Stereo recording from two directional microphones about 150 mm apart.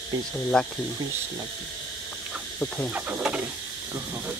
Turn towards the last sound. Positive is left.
turn(degrees=-10)  # may be behind; listen again after turning